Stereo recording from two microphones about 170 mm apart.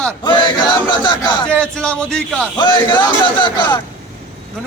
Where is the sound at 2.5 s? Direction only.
25° left (ahead or behind).